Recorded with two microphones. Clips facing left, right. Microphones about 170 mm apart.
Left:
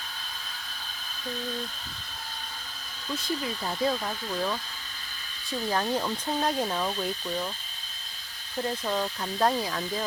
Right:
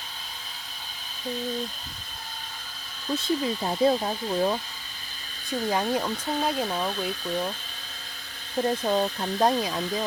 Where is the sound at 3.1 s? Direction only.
25° right (ahead or behind).